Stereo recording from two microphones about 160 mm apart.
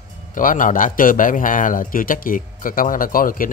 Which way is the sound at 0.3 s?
55° left (ahead or behind).